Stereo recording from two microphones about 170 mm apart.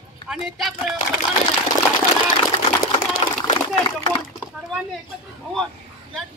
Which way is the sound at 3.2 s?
35° left (ahead or behind).